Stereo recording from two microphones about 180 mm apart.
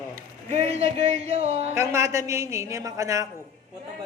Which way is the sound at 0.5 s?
35° right (ahead or behind).